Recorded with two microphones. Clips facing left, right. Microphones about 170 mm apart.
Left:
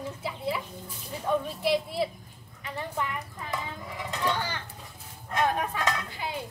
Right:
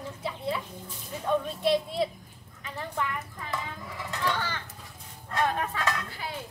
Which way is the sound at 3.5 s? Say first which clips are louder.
Left 1 dB; 20° left (ahead or behind).